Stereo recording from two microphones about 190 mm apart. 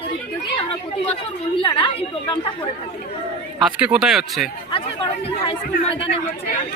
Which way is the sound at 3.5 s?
5° right (ahead or behind).